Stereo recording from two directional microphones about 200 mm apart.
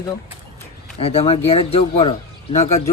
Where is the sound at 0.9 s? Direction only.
30° left (ahead or behind).